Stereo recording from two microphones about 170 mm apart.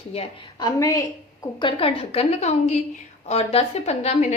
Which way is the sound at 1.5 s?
30° left (ahead or behind).